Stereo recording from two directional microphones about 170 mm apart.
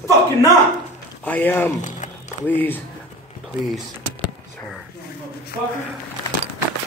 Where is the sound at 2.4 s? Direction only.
10° left (ahead or behind).